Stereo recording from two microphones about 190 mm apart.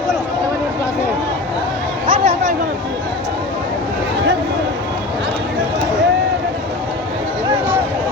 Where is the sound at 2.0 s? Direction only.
30° right (ahead or behind).